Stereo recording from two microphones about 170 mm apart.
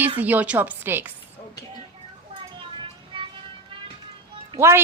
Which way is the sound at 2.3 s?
35° right (ahead or behind).